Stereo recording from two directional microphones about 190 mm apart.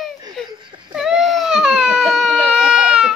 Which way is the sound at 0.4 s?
Centre (ahead or behind).